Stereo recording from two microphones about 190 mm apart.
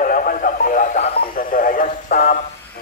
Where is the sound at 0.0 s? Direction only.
45° left (ahead or behind).